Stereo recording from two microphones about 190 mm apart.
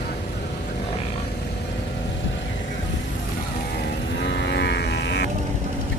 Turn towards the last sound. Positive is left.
turn(degrees=60)  # may be behind; listen again after turning